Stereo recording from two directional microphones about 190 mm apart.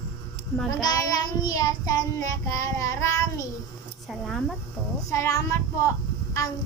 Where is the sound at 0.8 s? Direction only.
20° left (ahead or behind).